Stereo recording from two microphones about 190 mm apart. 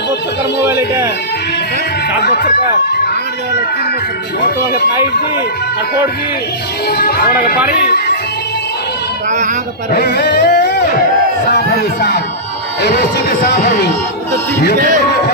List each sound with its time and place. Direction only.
0.7 s a man's voice: 15° right (ahead or behind)
6.9 s speech: 55° left (ahead or behind)
7.8 s music: 55° left (ahead or behind)
9.9 s music: 60° left (ahead or behind)
11.5 s speech: 55° left (ahead or behind)